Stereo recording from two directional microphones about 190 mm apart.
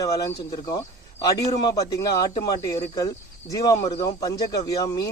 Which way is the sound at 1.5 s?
20° left (ahead or behind).